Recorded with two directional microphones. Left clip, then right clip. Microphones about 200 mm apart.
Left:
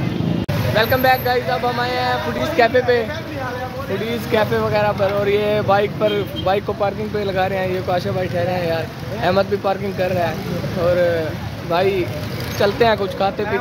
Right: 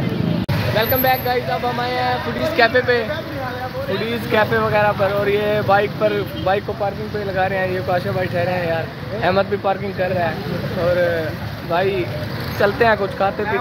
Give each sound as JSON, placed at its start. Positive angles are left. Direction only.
{"t": 0.7, "sound": "speech", "side_deg": 0}
{"t": 2.5, "sound": "speech", "side_deg": 15}
{"t": 4.1, "sound": "speech", "side_deg": 10}
{"t": 11.7, "sound": "speech", "side_deg": 15}